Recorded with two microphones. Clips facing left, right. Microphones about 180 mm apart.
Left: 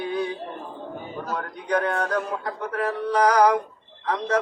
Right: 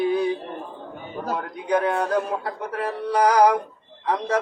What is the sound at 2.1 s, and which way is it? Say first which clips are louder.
Synthetic singing: right 3 dB; 10° right (ahead or behind).